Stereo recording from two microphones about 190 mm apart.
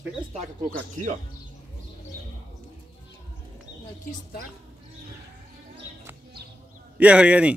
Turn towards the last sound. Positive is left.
turn(degrees=-5)  # may be behind; listen again after turning